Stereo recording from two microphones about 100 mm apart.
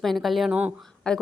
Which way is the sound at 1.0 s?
10° left (ahead or behind).